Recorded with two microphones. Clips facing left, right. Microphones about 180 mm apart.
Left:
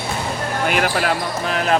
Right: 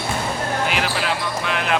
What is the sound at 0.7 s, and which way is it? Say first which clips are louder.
Speech: left 4 dB; 50° left (ahead or behind).